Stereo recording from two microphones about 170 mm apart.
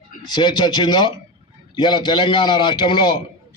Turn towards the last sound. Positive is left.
turn(degrees=25)  # may be behind; listen again after turning